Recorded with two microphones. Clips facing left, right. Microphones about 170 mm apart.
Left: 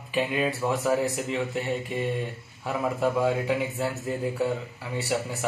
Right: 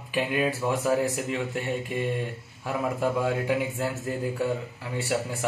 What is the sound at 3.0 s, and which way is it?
Speech, 5° right (ahead or behind).